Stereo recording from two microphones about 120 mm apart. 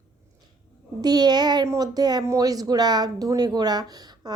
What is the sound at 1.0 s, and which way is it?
A woman's voice, 35° right (ahead or behind).